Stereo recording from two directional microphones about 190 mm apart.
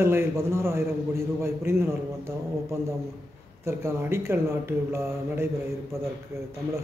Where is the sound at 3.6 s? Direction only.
15° right (ahead or behind).